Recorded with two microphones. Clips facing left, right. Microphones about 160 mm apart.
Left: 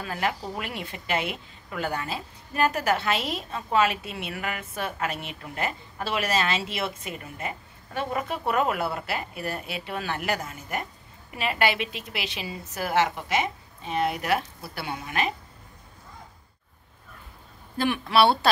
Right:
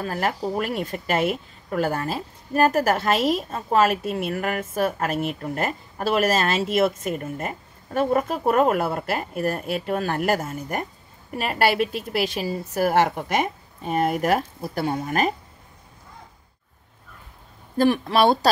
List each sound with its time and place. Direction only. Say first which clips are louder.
0.0 s a woman's voice: right 4 dB; 45° right (ahead or behind)
17.7 s speech: right 3 dB; 35° right (ahead or behind)